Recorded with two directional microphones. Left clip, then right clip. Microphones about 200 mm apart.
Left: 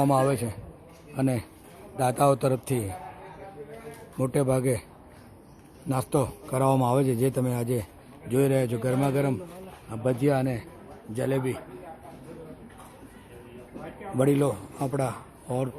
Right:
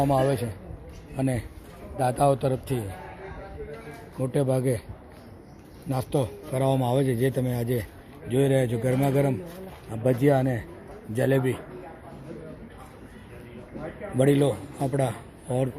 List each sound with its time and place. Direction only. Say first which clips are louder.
0.0 s a man's voice: even; 20° left (ahead or behind)
4.2 s a man's voice: even; 20° left (ahead or behind)
5.9 s a man's voice: left 1 dB; 20° left (ahead or behind)
14.2 s a man's voice: right 2 dB; 10° left (ahead or behind)